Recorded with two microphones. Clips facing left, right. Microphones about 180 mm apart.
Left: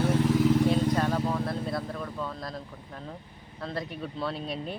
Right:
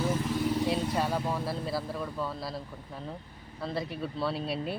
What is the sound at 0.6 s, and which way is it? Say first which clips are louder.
Speech: left 4 dB; 5° right (ahead or behind).